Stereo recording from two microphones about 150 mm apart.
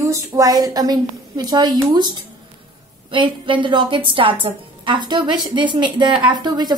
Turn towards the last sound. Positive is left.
turn(degrees=-30)  # may be behind; listen again after turning